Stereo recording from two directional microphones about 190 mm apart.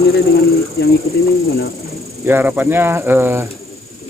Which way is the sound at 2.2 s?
10° right (ahead or behind).